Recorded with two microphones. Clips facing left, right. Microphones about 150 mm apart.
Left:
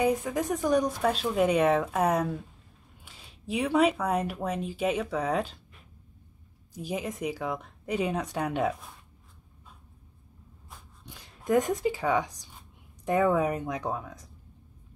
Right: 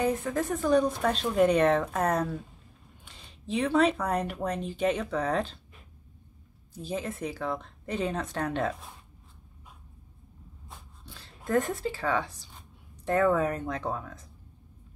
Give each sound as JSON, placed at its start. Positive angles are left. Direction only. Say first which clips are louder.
{"t": 0.0, "sound": "speech", "louder": "left 1 dB", "side_deg": 10}
{"t": 6.7, "sound": "speech", "louder": "left 1 dB", "side_deg": 10}
{"t": 11.1, "sound": "speech", "louder": "left 4 dB", "side_deg": 15}